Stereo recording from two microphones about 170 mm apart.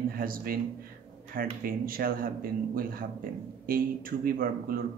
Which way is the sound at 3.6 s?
55° right (ahead or behind).